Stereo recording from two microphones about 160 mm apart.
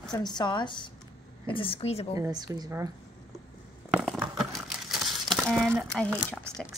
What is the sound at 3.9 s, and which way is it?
Crumpling, centre (ahead or behind).